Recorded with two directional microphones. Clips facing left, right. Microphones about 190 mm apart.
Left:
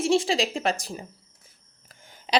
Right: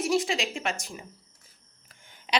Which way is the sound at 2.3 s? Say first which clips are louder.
Left 4 dB; 35° left (ahead or behind).